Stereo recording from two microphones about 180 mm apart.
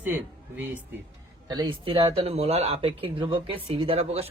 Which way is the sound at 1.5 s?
25° right (ahead or behind).